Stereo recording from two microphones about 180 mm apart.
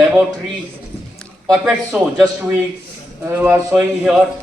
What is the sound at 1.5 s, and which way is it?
A man's voice, 5° right (ahead or behind).